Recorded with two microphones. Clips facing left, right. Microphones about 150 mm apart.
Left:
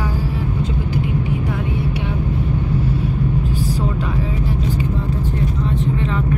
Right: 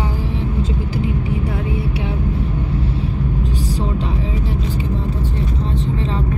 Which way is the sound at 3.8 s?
30° right (ahead or behind).